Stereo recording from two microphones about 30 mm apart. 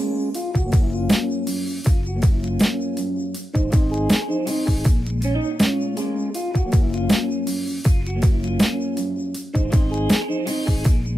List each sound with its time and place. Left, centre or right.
0.7 s music: centre
2.6 s music: centre
10.0 s music: centre